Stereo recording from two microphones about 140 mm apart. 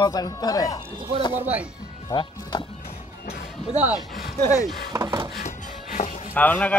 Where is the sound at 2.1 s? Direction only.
35° left (ahead or behind).